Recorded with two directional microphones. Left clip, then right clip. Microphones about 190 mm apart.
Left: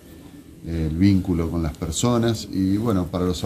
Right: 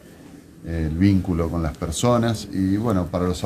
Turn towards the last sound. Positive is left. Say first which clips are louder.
# right 1 dB
turn(degrees=-10)  # may be behind; listen again after turning